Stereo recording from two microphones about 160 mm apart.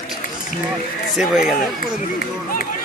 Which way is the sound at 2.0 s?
65° left (ahead or behind).